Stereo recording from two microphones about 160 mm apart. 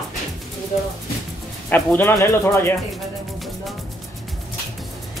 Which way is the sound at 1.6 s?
10° left (ahead or behind).